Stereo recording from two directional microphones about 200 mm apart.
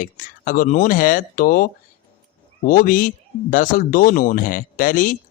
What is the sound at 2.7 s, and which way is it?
Speech, 45° left (ahead or behind).